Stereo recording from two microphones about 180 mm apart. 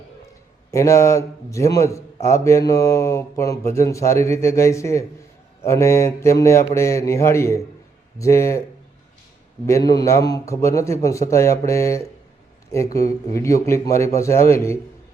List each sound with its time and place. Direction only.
0.7 s speech: 15° left (ahead or behind)
9.6 s speech: 20° left (ahead or behind)